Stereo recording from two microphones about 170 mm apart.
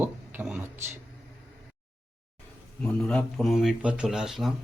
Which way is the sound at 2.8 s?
5° left (ahead or behind).